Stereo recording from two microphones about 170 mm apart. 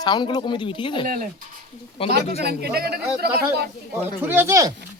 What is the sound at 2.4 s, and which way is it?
Speech, 70° right (ahead or behind).